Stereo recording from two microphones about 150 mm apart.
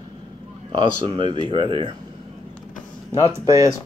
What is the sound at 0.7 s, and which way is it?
Speech, 35° right (ahead or behind).